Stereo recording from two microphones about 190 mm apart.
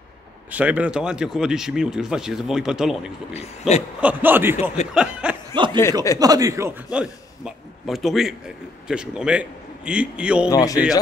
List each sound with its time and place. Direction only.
0.5 s speech: 10° right (ahead or behind)
3.3 s speech: 35° left (ahead or behind)
4.0 s speech: 10° right (ahead or behind)
4.9 s snicker: 5° right (ahead or behind)
5.5 s chuckle: 25° right (ahead or behind)
6.1 s speech: 20° right (ahead or behind)
6.9 s a man's voice: 5° right (ahead or behind)
10.5 s a man's voice: 20° left (ahead or behind)